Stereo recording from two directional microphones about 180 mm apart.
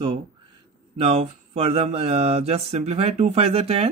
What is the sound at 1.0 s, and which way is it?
Speech, 35° right (ahead or behind).